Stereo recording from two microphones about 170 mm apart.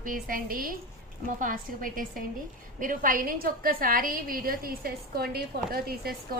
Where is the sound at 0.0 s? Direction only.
55° right (ahead or behind).